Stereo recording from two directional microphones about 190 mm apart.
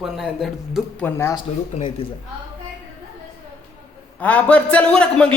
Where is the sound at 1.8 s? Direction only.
30° left (ahead or behind).